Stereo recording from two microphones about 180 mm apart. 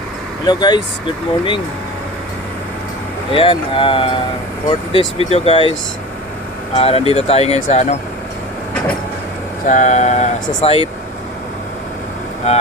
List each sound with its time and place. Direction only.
0.4 s speech: 25° left (ahead or behind)
3.3 s speech: 30° left (ahead or behind)
6.7 s speech: 35° left (ahead or behind)
9.6 s speech: 45° left (ahead or behind)
12.4 s speech: 35° left (ahead or behind)